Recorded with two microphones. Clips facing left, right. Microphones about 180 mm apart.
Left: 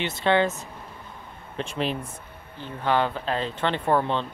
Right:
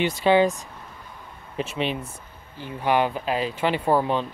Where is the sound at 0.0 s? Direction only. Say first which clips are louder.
Right 4 dB; 10° right (ahead or behind).